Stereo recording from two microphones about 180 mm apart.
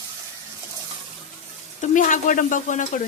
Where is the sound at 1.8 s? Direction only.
45° left (ahead or behind).